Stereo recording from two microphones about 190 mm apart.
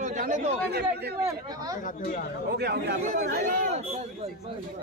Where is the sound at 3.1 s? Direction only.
45° right (ahead or behind).